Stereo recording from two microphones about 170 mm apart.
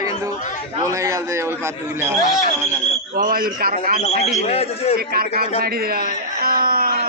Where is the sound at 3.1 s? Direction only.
60° right (ahead or behind).